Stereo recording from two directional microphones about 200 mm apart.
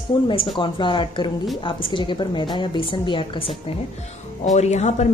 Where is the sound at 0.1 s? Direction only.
25° left (ahead or behind).